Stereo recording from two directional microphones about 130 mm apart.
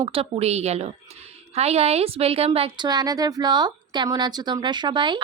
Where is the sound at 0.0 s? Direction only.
45° right (ahead or behind).